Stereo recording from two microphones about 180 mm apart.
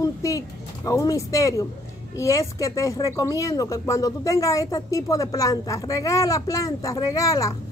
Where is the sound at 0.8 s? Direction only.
20° left (ahead or behind).